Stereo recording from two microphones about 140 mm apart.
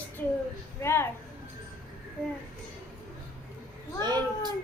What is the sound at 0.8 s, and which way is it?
Speech, 20° left (ahead or behind).